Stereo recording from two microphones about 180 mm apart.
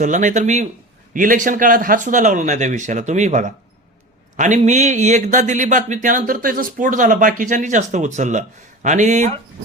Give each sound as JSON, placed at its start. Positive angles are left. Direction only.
{"t": 0.0, "sound": "speech", "side_deg": -45}